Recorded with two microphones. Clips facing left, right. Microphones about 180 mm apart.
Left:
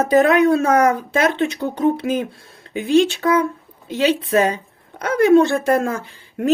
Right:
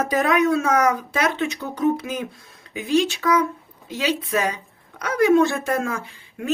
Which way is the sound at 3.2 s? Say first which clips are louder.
Left 3 dB; 30° left (ahead or behind).